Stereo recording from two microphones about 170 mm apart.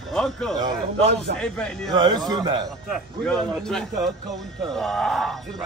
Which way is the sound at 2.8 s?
Centre (ahead or behind).